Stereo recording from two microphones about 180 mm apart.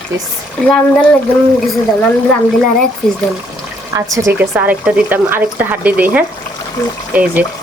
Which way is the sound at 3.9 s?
20° right (ahead or behind).